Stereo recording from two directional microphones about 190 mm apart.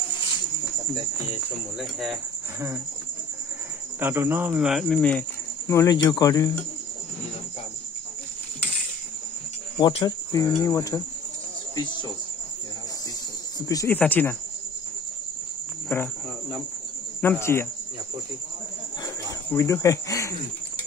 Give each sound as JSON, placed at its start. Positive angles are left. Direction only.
{"t": 1.8, "sound": "speech", "side_deg": 0}
{"t": 4.0, "sound": "speech", "side_deg": -10}
{"t": 5.7, "sound": "speech", "side_deg": 15}
{"t": 9.8, "sound": "speech", "side_deg": 25}
{"t": 13.6, "sound": "speech", "side_deg": 20}
{"t": 15.9, "sound": "speech", "side_deg": 15}
{"t": 17.4, "sound": "speech", "side_deg": 15}
{"t": 19.5, "sound": "speech", "side_deg": 15}